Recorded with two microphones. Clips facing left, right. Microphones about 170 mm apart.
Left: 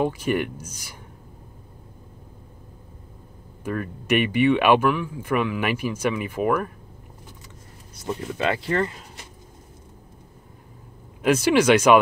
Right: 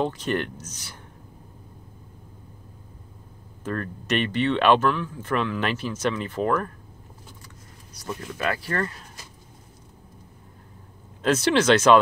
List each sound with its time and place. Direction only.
0.0 s speech: 10° left (ahead or behind)
3.6 s speech: 10° left (ahead or behind)
8.0 s speech: 25° left (ahead or behind)
11.2 s speech: 10° left (ahead or behind)